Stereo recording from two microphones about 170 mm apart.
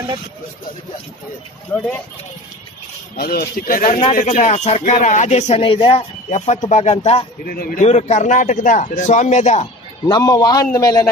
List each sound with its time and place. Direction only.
1.7 s speech: 10° left (ahead or behind)
3.2 s speech: 60° left (ahead or behind); by 7.2 s 40° left (ahead or behind)
7.4 s speech: 60° left (ahead or behind)
7.8 s speech: 40° left (ahead or behind)
10.0 s a man's voice: 20° left (ahead or behind)